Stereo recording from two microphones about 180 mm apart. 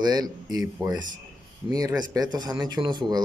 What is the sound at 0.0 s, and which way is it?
Speech, 20° right (ahead or behind).